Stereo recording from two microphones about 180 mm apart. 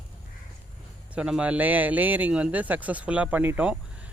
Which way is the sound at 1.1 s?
5° right (ahead or behind).